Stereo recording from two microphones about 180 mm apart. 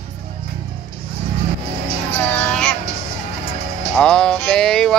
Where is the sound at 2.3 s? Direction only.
5° left (ahead or behind).